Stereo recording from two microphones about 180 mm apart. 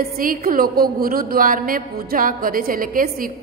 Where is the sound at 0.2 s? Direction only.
50° right (ahead or behind).